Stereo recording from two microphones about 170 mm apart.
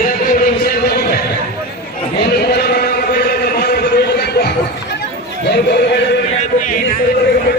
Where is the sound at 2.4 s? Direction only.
70° left (ahead or behind).